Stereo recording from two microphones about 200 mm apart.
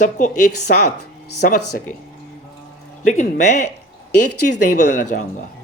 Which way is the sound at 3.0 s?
40° left (ahead or behind).